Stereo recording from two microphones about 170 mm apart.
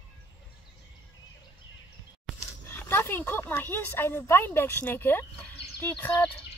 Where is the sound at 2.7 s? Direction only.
15° left (ahead or behind).